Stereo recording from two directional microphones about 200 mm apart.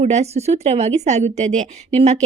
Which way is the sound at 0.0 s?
35° right (ahead or behind).